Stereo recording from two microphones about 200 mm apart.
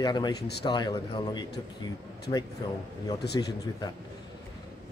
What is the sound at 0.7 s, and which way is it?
Speech, 20° left (ahead or behind).